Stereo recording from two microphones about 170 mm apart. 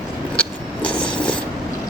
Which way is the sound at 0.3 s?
5° left (ahead or behind).